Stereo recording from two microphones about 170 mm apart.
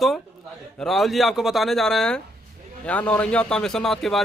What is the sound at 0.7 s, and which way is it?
Speech, centre (ahead or behind).